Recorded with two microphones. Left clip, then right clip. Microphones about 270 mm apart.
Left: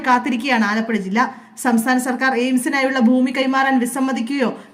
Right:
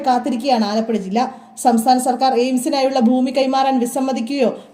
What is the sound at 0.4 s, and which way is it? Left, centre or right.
Speech, right.